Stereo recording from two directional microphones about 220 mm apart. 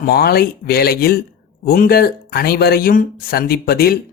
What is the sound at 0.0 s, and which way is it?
Speech, 45° left (ahead or behind).